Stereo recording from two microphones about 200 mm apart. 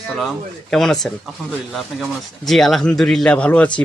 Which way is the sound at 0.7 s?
5° left (ahead or behind).